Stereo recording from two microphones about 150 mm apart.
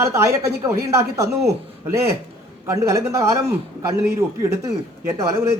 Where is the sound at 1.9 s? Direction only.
15° right (ahead or behind).